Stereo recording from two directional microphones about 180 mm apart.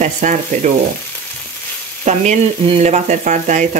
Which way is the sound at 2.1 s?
40° right (ahead or behind).